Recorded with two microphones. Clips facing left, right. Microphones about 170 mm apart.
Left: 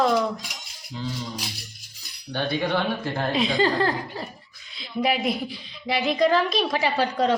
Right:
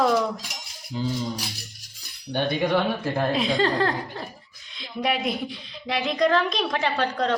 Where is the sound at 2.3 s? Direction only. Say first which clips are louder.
Right 2 dB; 15° right (ahead or behind).